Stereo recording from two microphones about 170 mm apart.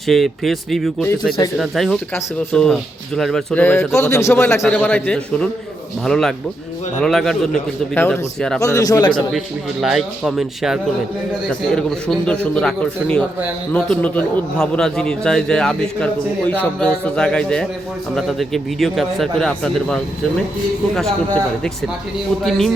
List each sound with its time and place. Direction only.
0.1 s a man's voice: centre (ahead or behind)
8.6 s speech: 20° left (ahead or behind)
9.8 s a man's voice: 5° right (ahead or behind)